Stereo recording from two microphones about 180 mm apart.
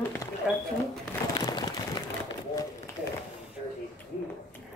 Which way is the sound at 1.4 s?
25° left (ahead or behind).